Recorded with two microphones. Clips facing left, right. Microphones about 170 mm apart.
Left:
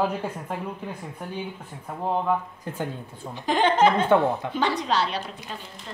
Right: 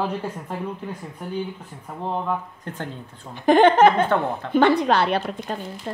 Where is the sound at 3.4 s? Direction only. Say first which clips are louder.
Right 6 dB; 55° right (ahead or behind).